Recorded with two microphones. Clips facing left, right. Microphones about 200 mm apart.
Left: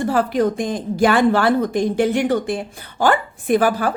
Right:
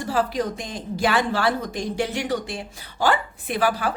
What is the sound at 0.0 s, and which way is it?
A woman's voice, 55° left (ahead or behind).